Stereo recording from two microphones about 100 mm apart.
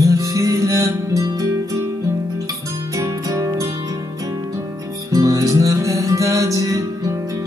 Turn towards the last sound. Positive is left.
turn(degrees=-35)  # may be behind; listen again after turning